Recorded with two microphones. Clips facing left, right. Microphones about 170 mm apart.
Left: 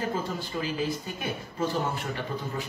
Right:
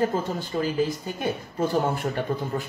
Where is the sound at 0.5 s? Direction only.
45° right (ahead or behind).